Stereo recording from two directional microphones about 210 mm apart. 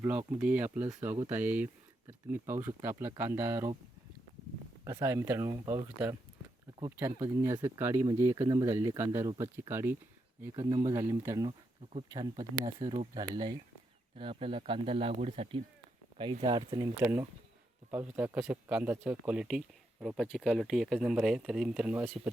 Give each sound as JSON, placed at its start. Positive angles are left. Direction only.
{"t": 0.0, "sound": "speech", "side_deg": -10}
{"t": 4.9, "sound": "speech", "side_deg": -15}